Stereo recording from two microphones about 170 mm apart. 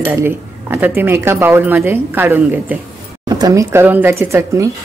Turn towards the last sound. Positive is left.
turn(degrees=-15)  # may be behind; listen again after turning